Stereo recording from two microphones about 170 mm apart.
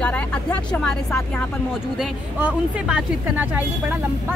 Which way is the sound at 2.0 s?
10° right (ahead or behind).